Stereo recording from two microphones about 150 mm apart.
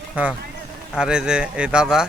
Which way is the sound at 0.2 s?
10° right (ahead or behind).